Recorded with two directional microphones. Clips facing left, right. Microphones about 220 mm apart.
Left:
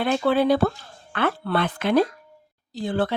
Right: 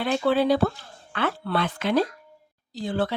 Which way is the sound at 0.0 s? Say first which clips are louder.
Left 2 dB; 55° left (ahead or behind).